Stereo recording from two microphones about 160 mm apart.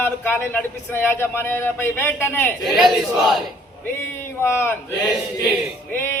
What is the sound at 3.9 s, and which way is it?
A man's voice, 15° left (ahead or behind).